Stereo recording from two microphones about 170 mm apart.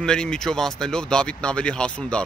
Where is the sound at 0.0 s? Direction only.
5° left (ahead or behind).